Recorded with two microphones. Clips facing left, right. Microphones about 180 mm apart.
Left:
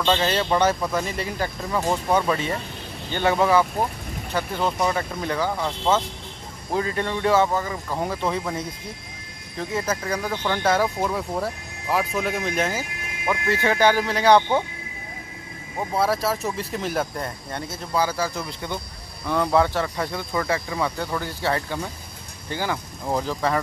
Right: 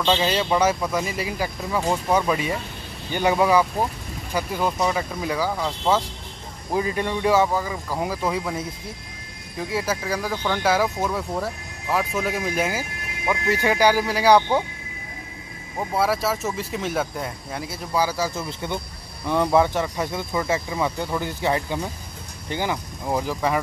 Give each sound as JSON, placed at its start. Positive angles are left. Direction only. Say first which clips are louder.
{"t": 0.0, "sound": "speech", "louder": "even", "side_deg": -10}
{"t": 15.9, "sound": "speech", "louder": "even", "side_deg": 0}